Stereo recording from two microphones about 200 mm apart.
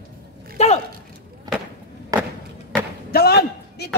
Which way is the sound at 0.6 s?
35° left (ahead or behind).